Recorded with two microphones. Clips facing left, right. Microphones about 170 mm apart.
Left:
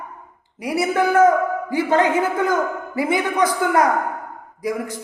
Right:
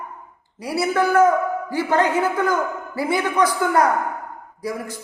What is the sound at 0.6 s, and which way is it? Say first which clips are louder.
A man's voice: left 1 dB; 15° left (ahead or behind).